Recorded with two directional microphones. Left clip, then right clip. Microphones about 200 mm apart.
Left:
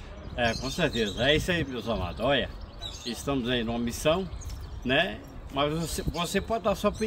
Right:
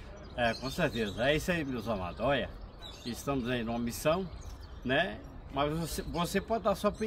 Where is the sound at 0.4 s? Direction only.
Centre (ahead or behind).